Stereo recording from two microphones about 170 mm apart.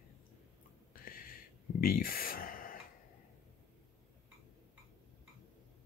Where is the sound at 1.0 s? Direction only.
55° left (ahead or behind).